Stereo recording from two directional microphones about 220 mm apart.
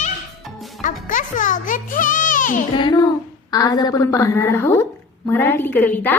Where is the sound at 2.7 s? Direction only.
20° left (ahead or behind).